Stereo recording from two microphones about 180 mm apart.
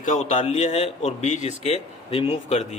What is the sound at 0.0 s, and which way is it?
A man's voice, 40° left (ahead or behind).